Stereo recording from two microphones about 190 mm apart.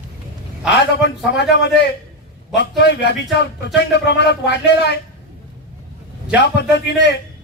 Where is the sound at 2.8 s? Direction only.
65° left (ahead or behind).